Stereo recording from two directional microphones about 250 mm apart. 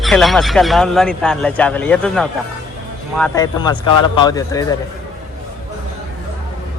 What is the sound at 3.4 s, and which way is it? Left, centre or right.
A man's voice, centre.